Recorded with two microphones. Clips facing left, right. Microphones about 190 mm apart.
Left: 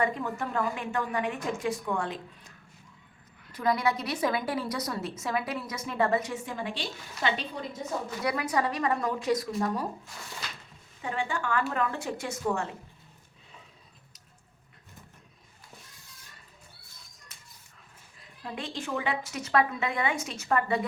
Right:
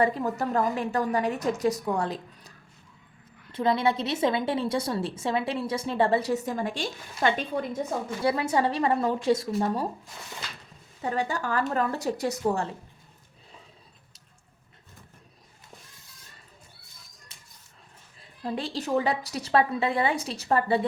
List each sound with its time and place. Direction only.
0.0 s a woman's voice: 35° right (ahead or behind)
3.5 s a woman's voice: 25° right (ahead or behind); by 7.6 s 50° right (ahead or behind)
8.2 s a woman's voice: 30° right (ahead or behind)
11.0 s a woman's voice: 40° right (ahead or behind)
17.3 s a sound: 30° right (ahead or behind)
18.2 s a woman's voice: 35° right (ahead or behind)